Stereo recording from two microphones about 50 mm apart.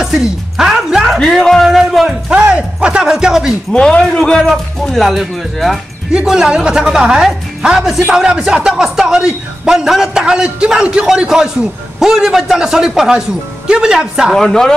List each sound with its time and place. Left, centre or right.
0.0 s music: centre
1.2 s speech: centre
2.5 s a man's voice: right
3.7 s speech: left
4.2 s a man's voice: centre
14.3 s speech: centre